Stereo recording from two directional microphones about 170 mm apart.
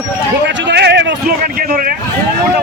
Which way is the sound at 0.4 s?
85° right.